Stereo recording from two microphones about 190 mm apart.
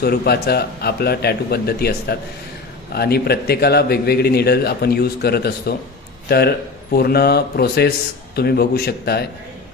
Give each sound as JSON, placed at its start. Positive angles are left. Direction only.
{"t": 0.0, "sound": "a man's voice", "side_deg": 55}